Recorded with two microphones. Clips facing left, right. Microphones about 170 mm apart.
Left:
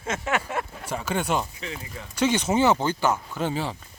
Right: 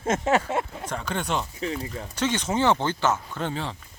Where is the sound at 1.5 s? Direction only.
35° right (ahead or behind).